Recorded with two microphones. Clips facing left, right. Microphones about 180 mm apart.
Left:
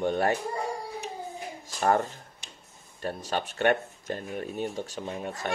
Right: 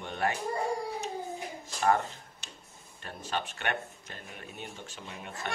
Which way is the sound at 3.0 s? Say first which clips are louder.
Left 5 dB; 40° left (ahead or behind).